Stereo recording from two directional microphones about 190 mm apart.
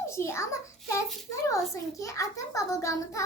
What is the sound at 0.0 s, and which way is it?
Speech, 15° left (ahead or behind).